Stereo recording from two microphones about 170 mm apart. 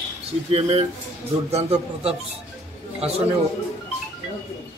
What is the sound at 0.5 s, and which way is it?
Speech, 40° right (ahead or behind).